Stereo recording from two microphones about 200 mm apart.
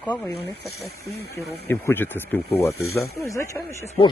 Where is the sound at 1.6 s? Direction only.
10° left (ahead or behind).